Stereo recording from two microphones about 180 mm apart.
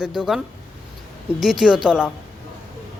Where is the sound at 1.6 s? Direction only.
5° right (ahead or behind).